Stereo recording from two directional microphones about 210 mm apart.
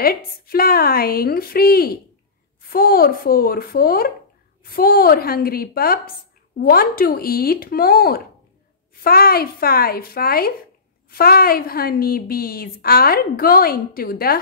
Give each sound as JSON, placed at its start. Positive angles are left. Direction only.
{"t": 0.0, "sound": "a woman's voice", "side_deg": 45}